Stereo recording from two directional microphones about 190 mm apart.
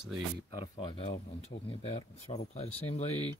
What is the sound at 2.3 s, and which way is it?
Speech, 35° left (ahead or behind).